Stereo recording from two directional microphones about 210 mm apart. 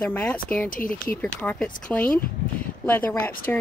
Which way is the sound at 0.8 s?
40° left (ahead or behind).